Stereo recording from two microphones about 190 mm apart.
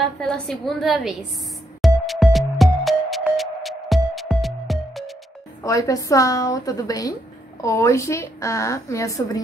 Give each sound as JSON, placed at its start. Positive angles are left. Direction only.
{"t": 0.0, "sound": "a woman's voice", "side_deg": 0}
{"t": 1.8, "sound": "music", "side_deg": 0}
{"t": 5.6, "sound": "a woman's voice", "side_deg": 15}